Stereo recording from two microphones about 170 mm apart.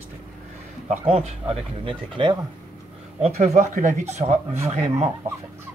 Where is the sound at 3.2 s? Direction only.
45° right (ahead or behind).